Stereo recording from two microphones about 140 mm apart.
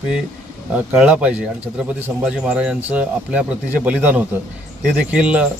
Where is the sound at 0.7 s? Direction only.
10° right (ahead or behind).